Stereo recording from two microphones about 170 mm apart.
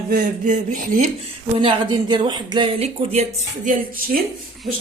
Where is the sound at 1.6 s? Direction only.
30° right (ahead or behind).